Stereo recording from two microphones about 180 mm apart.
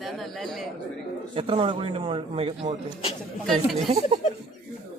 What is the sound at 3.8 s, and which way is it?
Speech, 35° right (ahead or behind).